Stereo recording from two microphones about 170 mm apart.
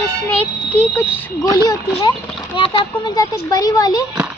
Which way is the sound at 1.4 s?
20° left (ahead or behind).